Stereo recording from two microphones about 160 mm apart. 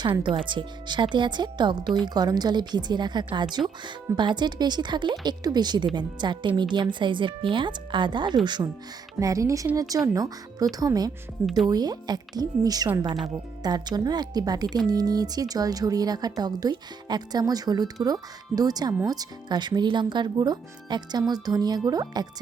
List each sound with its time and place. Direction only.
0.0 s speech: 30° right (ahead or behind)
11.4 s speech: centre (ahead or behind)
11.7 s speech: 25° right (ahead or behind)